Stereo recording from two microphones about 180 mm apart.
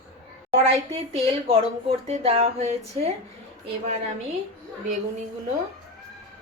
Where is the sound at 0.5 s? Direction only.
30° right (ahead or behind).